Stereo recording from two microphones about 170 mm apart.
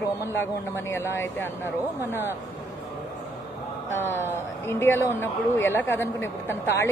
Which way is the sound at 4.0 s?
15° left (ahead or behind).